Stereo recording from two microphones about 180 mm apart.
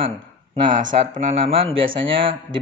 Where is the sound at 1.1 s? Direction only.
30° right (ahead or behind).